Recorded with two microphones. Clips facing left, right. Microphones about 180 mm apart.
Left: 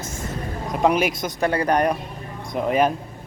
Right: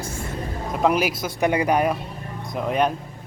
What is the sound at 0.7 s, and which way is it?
Speech, centre (ahead or behind).